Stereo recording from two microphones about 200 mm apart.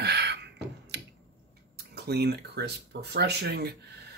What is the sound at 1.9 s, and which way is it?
Speech, 55° right (ahead or behind).